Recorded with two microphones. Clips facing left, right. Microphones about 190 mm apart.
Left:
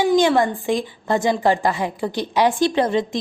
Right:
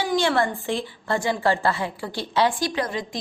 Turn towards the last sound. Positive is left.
turn(degrees=25)  # may be behind; listen again after turning